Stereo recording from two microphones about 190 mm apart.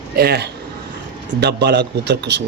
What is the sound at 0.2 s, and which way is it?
Speech, 55° right (ahead or behind).